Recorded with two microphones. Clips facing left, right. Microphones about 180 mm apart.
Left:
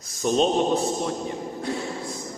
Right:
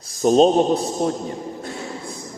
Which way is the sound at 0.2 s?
40° right (ahead or behind).